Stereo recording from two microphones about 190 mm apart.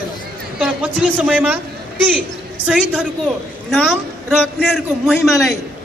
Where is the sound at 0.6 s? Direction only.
5° right (ahead or behind).